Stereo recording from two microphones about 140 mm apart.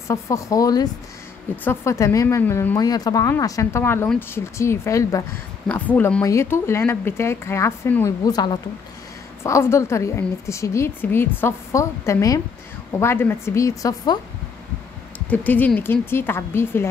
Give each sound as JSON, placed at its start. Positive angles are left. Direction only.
{"t": 0.1, "sound": "a woman's voice", "side_deg": 20}
{"t": 2.8, "sound": "a woman's voice", "side_deg": 30}
{"t": 15.2, "sound": "a woman's voice", "side_deg": 10}